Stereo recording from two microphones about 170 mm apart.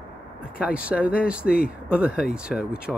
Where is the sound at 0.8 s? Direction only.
5° right (ahead or behind).